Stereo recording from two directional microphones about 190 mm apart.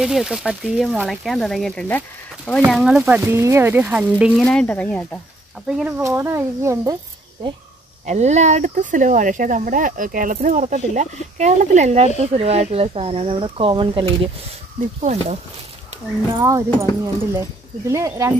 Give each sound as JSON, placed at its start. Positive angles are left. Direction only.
{"t": 0.0, "sound": "speech", "side_deg": 0}
{"t": 3.2, "sound": "speech", "side_deg": -15}
{"t": 5.7, "sound": "speech", "side_deg": -5}
{"t": 8.0, "sound": "speech", "side_deg": -35}
{"t": 16.3, "sound": "speech", "side_deg": -15}